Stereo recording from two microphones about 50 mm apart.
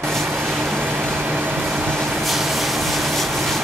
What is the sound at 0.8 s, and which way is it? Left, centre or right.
Vehicle, right.